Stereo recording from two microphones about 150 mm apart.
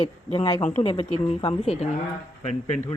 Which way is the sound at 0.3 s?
35° left (ahead or behind).